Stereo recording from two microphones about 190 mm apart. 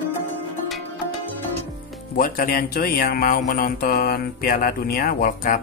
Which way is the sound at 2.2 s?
50° left (ahead or behind).